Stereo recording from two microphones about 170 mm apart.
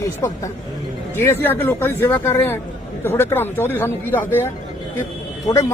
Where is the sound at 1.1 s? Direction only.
15° left (ahead or behind).